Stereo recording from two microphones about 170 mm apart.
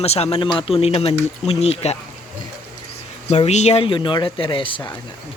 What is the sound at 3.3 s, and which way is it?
Speech, 40° left (ahead or behind).